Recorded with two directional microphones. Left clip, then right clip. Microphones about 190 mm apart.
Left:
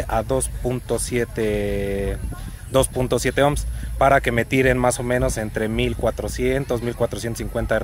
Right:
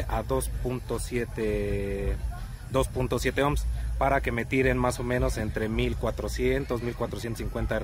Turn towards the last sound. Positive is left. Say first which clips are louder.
# left 9 dB
turn(degrees=30)  # may be behind; listen again after turning